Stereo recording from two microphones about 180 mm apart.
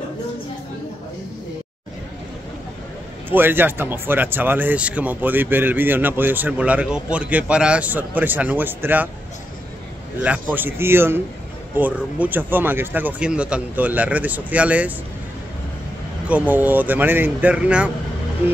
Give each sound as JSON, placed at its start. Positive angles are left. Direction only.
{"t": 3.3, "sound": "speech", "side_deg": -10}
{"t": 10.2, "sound": "speech", "side_deg": -10}
{"t": 16.3, "sound": "speech", "side_deg": -10}